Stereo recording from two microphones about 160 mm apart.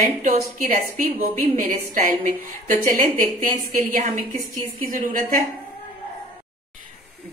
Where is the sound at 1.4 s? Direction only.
50° right (ahead or behind).